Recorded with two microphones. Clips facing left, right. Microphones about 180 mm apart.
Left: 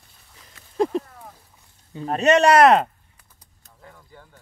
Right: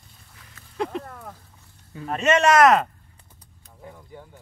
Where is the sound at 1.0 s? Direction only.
60° right (ahead or behind).